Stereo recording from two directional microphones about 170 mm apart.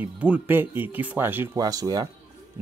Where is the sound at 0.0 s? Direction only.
10° right (ahead or behind).